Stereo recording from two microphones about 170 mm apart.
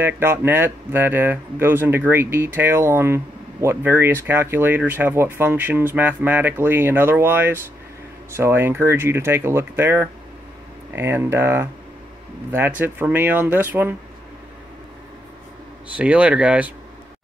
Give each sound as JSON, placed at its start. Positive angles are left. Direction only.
{"t": 0.0, "sound": "speech", "side_deg": -15}
{"t": 16.0, "sound": "speech", "side_deg": -10}